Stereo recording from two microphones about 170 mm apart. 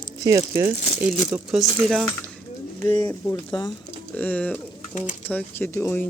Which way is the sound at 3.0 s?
15° left (ahead or behind).